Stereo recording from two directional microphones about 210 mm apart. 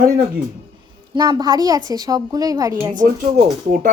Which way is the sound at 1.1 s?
20° right (ahead or behind).